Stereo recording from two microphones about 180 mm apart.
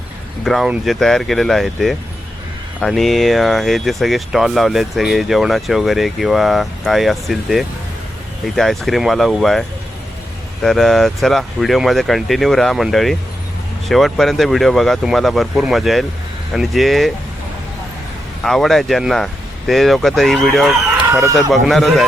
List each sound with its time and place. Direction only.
0.4 s speech: centre (ahead or behind)
18.4 s speech: centre (ahead or behind)
21.1 s speech: 15° right (ahead or behind)
21.5 s speech: centre (ahead or behind)